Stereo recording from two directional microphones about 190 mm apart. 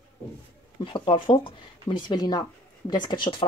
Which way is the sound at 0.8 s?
25° left (ahead or behind).